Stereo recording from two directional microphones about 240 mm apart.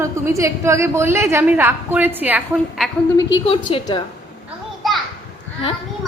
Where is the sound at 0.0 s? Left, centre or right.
Centre.